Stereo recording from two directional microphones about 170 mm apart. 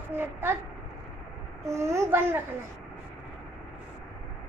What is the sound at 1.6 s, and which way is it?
Speech, 15° right (ahead or behind).